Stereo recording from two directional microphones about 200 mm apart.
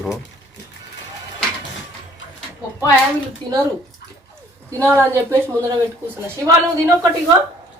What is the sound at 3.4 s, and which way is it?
Speech, 25° right (ahead or behind).